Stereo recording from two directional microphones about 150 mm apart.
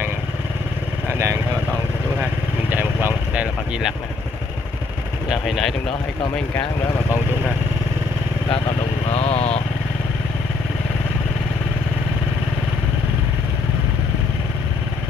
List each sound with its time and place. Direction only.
1.0 s vehicle: 15° right (ahead or behind)
2.7 s vehicle: 10° right (ahead or behind)
5.3 s speech: centre (ahead or behind)
6.5 s speech: 15° left (ahead or behind)
9.0 s speech: 45° left (ahead or behind)